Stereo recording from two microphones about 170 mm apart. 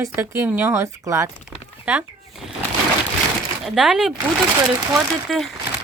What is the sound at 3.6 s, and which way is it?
Speech, 5° right (ahead or behind).